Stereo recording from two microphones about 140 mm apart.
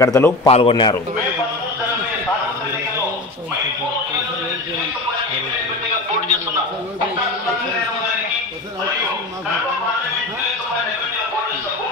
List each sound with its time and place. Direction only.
0.0 s speech: 20° left (ahead or behind)
0.5 s a man's voice: 45° left (ahead or behind)